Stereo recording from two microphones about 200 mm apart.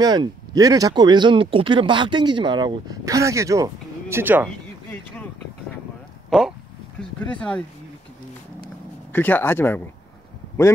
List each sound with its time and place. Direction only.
0.0 s speech: 20° right (ahead or behind)
6.3 s speech: 5° right (ahead or behind)
9.1 s speech: 10° left (ahead or behind)